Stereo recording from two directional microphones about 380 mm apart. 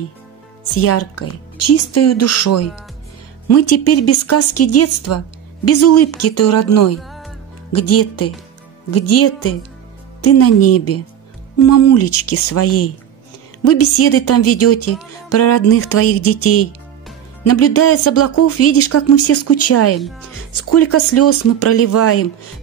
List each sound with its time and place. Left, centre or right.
0.7 s speech: left
7.0 s music: centre
7.7 s speech: left
20.0 s speech: centre
20.5 s speech: left